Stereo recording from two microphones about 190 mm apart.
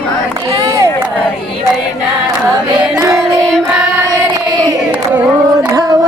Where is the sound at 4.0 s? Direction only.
15° right (ahead or behind).